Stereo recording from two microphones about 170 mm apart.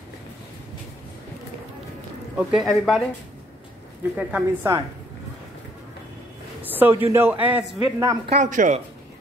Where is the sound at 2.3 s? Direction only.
Centre (ahead or behind).